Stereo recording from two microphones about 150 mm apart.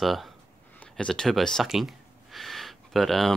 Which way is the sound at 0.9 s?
5° left (ahead or behind).